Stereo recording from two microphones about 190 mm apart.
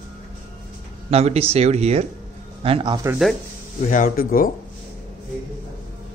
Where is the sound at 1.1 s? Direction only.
35° right (ahead or behind).